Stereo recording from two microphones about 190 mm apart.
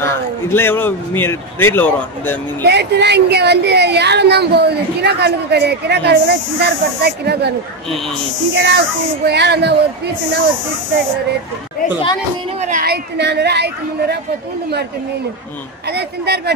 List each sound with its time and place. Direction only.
0.0 s a man's voice: 10° left (ahead or behind)
2.6 s speech: 60° right (ahead or behind)
8.5 s speech: 60° right (ahead or behind)
12.6 s speech: 50° right (ahead or behind)
15.9 s speech: 60° right (ahead or behind)